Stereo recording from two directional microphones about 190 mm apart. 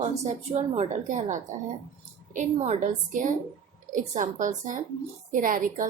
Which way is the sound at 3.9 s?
45° right (ahead or behind).